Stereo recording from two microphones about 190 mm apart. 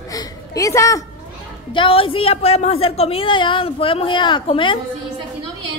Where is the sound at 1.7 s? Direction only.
30° left (ahead or behind).